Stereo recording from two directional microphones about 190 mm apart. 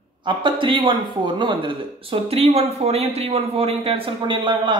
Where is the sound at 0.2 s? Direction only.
25° right (ahead or behind).